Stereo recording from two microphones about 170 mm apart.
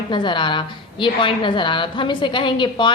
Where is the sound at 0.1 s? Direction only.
25° left (ahead or behind).